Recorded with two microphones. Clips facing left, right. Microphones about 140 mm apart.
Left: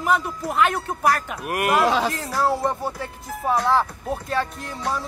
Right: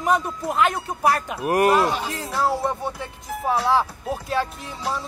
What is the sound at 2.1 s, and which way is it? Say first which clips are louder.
Speech: left 1 dB; centre (ahead or behind).